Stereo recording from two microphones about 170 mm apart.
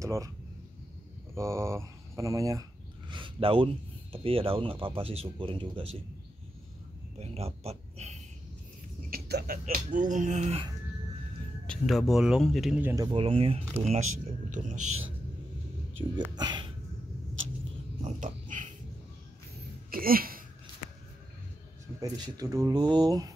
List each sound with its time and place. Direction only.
0.0 s speech: 15° right (ahead or behind)
1.3 s speech: 15° right (ahead or behind)
3.1 s speech: 30° right (ahead or behind)
7.2 s speech: 35° right (ahead or behind)
9.1 s speech: 65° right (ahead or behind); by 10.6 s 45° right (ahead or behind)
11.6 s speech: 5° left (ahead or behind)
12.9 s speech: 25° right (ahead or behind); by 14.8 s 45° right (ahead or behind)
16.0 s speech: 25° right (ahead or behind)
18.0 s dog: 50° right (ahead or behind)
19.9 s speech: 60° right (ahead or behind)
22.0 s speech: 20° right (ahead or behind)